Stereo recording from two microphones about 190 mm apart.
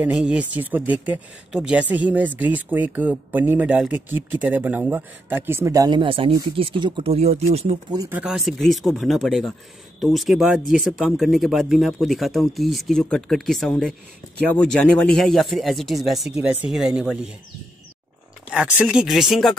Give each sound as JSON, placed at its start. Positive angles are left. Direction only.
{"t": 0.0, "sound": "speech", "side_deg": -5}
{"t": 7.9, "sound": "speech", "side_deg": -20}
{"t": 8.2, "sound": "speech", "side_deg": 0}
{"t": 18.5, "sound": "speech", "side_deg": -5}